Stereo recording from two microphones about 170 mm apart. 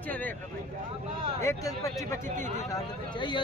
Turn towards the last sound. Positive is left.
turn(degrees=25)  # may be behind; listen again after turning